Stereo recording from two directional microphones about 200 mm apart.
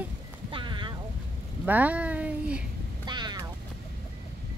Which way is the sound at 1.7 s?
10° right (ahead or behind).